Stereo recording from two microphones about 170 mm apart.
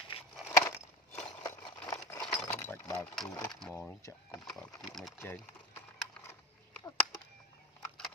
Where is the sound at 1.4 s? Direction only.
20° left (ahead or behind).